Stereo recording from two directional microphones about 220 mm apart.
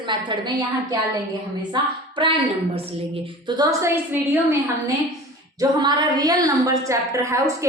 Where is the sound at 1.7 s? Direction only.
20° right (ahead or behind).